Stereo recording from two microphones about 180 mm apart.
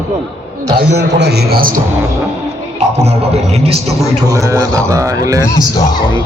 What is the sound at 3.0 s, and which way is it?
Speech, 35° right (ahead or behind).